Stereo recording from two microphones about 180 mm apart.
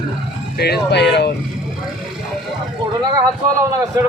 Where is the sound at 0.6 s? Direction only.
65° left (ahead or behind).